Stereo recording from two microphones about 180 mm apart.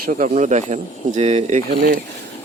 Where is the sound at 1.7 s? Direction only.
55° right (ahead or behind).